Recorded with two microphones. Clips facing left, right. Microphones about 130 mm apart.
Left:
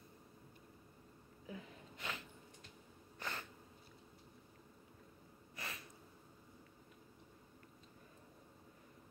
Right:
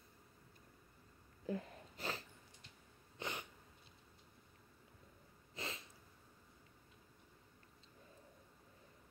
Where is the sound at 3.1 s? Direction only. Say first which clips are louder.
Right 1 dB; 20° right (ahead or behind).